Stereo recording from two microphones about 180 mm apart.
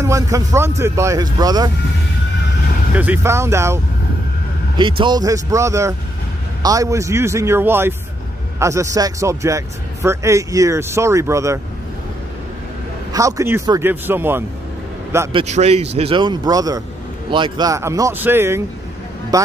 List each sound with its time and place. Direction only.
0.0 s a man's voice: 15° right (ahead or behind)
2.9 s a man's voice: 10° right (ahead or behind)
4.7 s a man's voice: 25° right (ahead or behind)
13.1 s a man's voice: 15° right (ahead or behind)
15.3 s a man's voice: 35° right (ahead or behind); by 19.5 s 20° right (ahead or behind)